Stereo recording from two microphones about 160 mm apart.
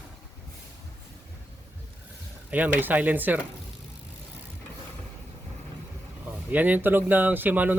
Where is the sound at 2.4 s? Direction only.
10° right (ahead or behind).